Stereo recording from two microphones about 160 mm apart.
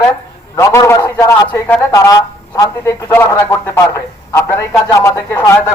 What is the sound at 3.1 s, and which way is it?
A man's voice, 15° left (ahead or behind).